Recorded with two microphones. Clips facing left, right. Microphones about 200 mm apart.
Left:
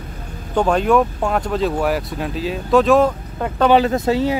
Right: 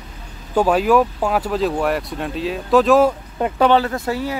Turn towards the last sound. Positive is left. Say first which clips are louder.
# left 5 dB
turn(degrees=20)  # may be behind; listen again after turning